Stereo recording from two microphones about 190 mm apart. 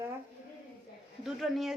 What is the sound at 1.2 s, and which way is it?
Speech, centre (ahead or behind).